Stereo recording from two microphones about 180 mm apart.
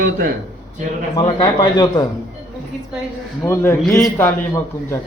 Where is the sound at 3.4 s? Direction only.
15° left (ahead or behind).